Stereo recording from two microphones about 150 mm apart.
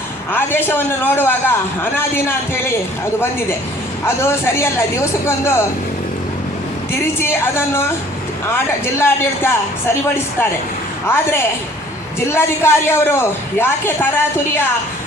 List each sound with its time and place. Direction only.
0.3 s speech: 15° left (ahead or behind)
4.0 s speech: 15° left (ahead or behind)
7.2 s speech: 15° left (ahead or behind)
9.0 s speech: 15° left (ahead or behind)
11.0 s speech: 15° left (ahead or behind)